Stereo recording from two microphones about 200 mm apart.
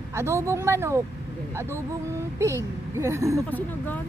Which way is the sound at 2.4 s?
15° right (ahead or behind).